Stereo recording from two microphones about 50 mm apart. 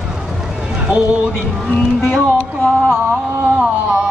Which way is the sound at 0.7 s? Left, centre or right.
Right.